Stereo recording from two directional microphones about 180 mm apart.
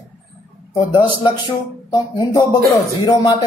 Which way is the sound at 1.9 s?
25° left (ahead or behind).